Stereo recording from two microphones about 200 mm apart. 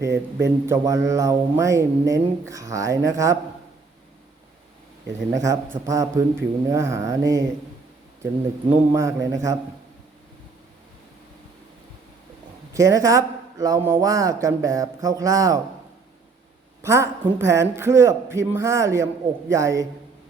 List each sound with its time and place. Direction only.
0.0 s speech: 15° right (ahead or behind)
5.3 s speech: 15° right (ahead or behind)
8.7 s speech: 15° right (ahead or behind)
12.7 s speech: 15° right (ahead or behind)
16.8 s speech: 15° right (ahead or behind)